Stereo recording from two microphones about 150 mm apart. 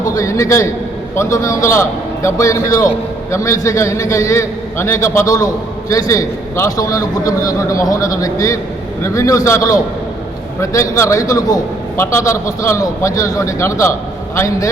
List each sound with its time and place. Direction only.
0.0 s a man's voice: 25° left (ahead or behind)